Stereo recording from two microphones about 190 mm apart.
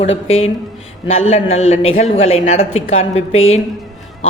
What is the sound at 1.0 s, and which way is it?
Speech, 30° left (ahead or behind).